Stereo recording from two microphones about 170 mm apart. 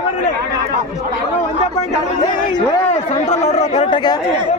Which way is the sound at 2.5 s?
35° left (ahead or behind).